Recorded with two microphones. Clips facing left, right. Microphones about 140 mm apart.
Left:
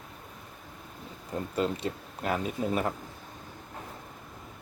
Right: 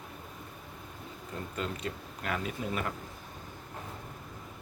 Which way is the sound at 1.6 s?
35° left (ahead or behind).